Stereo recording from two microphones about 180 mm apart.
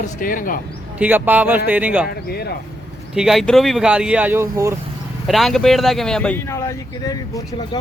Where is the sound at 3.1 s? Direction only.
Centre (ahead or behind).